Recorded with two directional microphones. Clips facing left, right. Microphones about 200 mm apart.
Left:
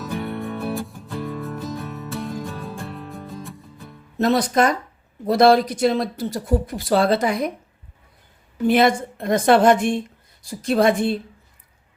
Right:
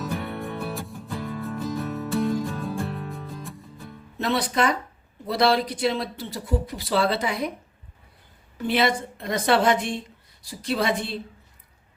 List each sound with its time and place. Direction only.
0.3 s music: centre (ahead or behind)
4.2 s speech: 45° left (ahead or behind)
8.6 s speech: 50° left (ahead or behind)